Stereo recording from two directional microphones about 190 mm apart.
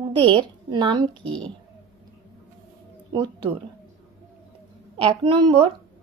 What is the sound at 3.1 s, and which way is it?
Speech, 20° right (ahead or behind).